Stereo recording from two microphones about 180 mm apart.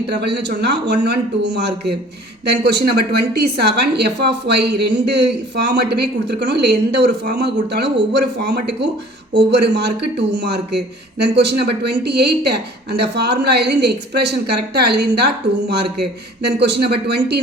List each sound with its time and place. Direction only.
0.2 s a woman's voice: 70° right (ahead or behind)
16.4 s a woman's voice: 70° right (ahead or behind)